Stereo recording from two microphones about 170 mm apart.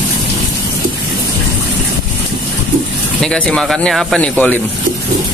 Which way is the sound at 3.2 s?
5° left (ahead or behind).